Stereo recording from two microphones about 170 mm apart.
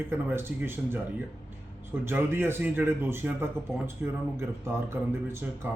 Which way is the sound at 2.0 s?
15° right (ahead or behind).